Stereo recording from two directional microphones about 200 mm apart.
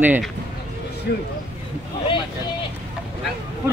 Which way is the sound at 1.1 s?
55° left (ahead or behind).